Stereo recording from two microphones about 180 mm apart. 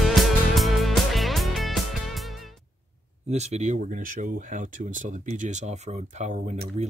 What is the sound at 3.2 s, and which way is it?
Speech, 40° right (ahead or behind).